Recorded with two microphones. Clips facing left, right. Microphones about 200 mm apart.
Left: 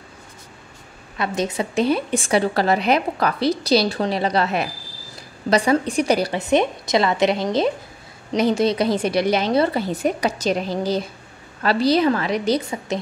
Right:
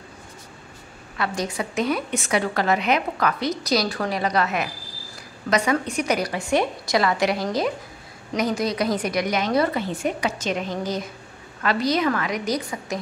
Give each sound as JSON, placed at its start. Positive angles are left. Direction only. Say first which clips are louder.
{"t": 1.1, "sound": "a woman's voice", "louder": "left 3 dB", "side_deg": 20}